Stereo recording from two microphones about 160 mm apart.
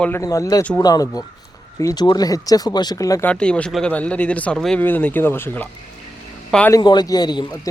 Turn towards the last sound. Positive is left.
turn(degrees=25)  # may be behind; listen again after turning